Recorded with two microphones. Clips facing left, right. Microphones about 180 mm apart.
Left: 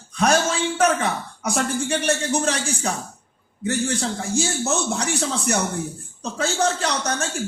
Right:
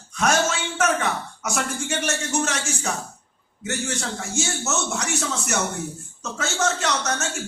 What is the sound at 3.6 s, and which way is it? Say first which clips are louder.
A man's voice: left 5 dB; 30° left (ahead or behind).